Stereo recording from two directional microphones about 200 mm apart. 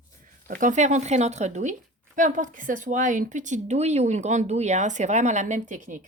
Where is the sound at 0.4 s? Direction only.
40° right (ahead or behind).